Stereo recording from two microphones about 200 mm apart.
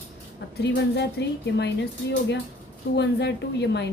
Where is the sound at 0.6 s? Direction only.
60° left (ahead or behind).